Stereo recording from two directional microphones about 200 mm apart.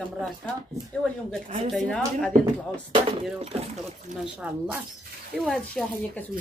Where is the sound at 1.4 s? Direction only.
30° right (ahead or behind).